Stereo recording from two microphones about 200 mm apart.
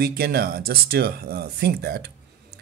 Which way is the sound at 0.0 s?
50° right (ahead or behind).